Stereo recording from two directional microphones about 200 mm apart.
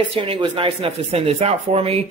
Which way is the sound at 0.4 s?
25° right (ahead or behind).